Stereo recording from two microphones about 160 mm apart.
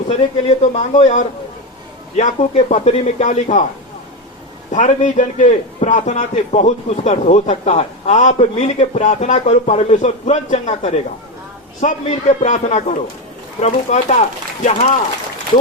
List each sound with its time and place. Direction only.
0.1 s a man's voice: 45° left (ahead or behind)
4.7 s a man's voice: 50° left (ahead or behind)